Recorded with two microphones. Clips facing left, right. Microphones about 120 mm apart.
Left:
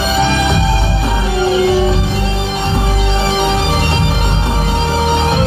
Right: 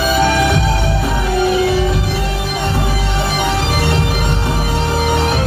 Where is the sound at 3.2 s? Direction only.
25° left (ahead or behind).